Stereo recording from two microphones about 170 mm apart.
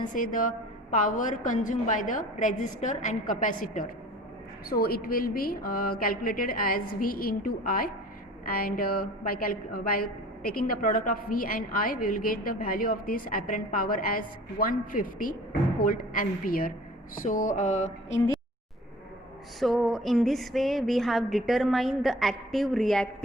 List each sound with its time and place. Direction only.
0.1 s a woman's voice: 55° left (ahead or behind)
4.7 s a woman's voice: 65° left (ahead or behind); by 18.2 s 45° left (ahead or behind)
19.5 s a sound: centre (ahead or behind)